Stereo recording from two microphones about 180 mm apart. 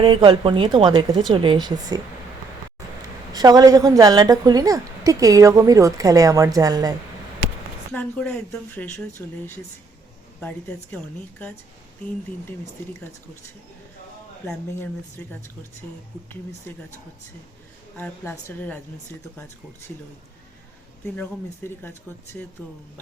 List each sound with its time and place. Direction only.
0.0 s a woman's voice: 25° right (ahead or behind)
3.3 s a woman's voice: 20° right (ahead or behind)
7.9 s speech: 10° left (ahead or behind)
16.7 s speech: 10° left (ahead or behind)
17.9 s speech: 15° left (ahead or behind)
21.2 s speech: 10° left (ahead or behind)